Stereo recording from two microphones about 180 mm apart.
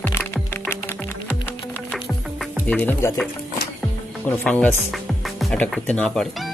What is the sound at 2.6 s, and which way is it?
Music, 10° left (ahead or behind).